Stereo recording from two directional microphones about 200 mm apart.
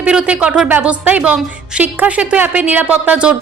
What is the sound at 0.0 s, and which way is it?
A woman's voice, 5° right (ahead or behind).